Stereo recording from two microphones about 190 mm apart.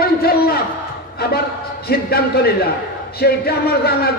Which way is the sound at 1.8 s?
55° left (ahead or behind).